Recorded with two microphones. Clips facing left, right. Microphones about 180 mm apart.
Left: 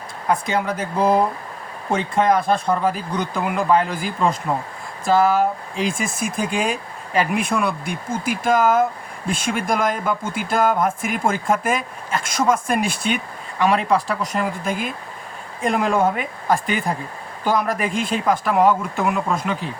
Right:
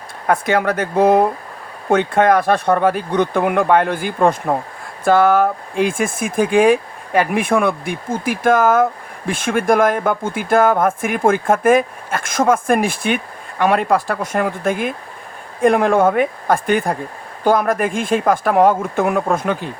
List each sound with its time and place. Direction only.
0.3 s speech: 60° right (ahead or behind)